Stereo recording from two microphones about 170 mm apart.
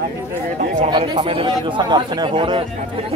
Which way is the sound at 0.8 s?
30° right (ahead or behind).